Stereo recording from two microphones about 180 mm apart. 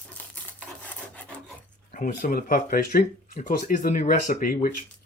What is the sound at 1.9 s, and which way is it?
Speech, 45° left (ahead or behind).